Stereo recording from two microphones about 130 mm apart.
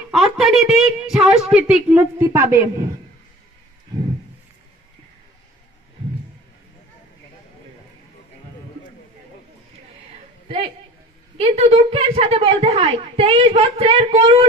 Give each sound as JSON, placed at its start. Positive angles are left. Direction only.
{"t": 0.1, "sound": "a woman's voice", "side_deg": 0}
{"t": 11.3, "sound": "a woman's voice", "side_deg": -50}